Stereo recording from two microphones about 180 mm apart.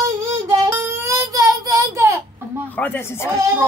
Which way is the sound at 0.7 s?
15° right (ahead or behind).